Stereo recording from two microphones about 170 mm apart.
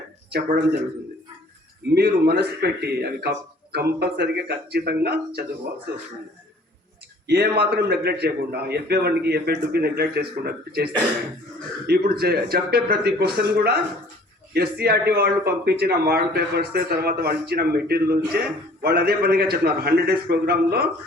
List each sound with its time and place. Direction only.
0.3 s a man's voice: 70° right (ahead or behind)
2.0 s a man's voice: 70° right (ahead or behind)
7.3 s a man's voice: 70° right (ahead or behind)
11.9 s a man's voice: 65° right (ahead or behind)